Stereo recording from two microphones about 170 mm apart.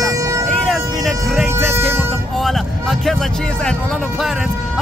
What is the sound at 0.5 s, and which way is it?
Vehicle, centre (ahead or behind).